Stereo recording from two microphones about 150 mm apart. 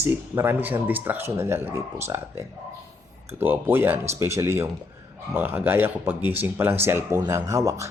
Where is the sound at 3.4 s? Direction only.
15° right (ahead or behind).